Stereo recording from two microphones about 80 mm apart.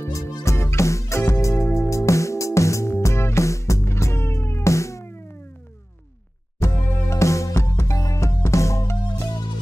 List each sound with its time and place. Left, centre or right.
0.0 s music: left
6.6 s music: left